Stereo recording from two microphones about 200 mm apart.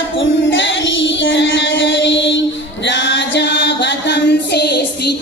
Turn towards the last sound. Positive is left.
turn(degrees=55)  # may be behind; listen again after turning